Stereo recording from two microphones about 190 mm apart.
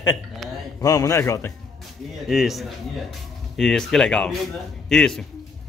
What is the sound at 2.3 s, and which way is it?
A man's voice, centre (ahead or behind).